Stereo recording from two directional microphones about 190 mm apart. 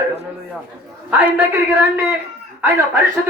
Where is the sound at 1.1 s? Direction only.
10° right (ahead or behind).